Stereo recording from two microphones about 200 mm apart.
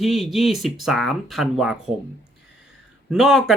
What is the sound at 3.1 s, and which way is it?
Speech, centre (ahead or behind).